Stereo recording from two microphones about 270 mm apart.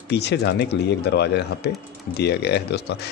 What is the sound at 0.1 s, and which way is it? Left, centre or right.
A man's voice, left.